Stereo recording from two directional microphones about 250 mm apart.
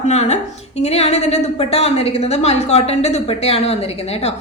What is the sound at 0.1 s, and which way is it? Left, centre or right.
Speech, left.